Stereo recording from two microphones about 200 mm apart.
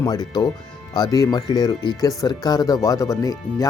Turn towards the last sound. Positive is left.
turn(degrees=15)  # may be behind; listen again after turning